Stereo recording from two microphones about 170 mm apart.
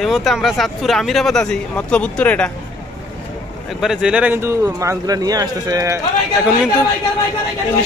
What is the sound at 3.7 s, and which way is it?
Speech, centre (ahead or behind).